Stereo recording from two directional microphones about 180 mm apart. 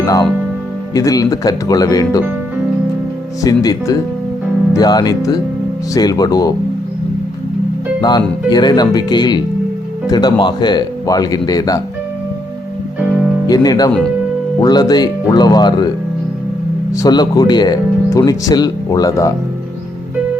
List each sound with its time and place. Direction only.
0.0 s speech: 20° left (ahead or behind)
3.4 s speech: 20° left (ahead or behind)
8.0 s speech: 20° left (ahead or behind)
13.5 s speech: 20° left (ahead or behind)
16.9 s speech: 20° left (ahead or behind)